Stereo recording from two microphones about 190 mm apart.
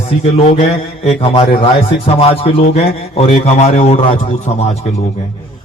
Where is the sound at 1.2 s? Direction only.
30° left (ahead or behind).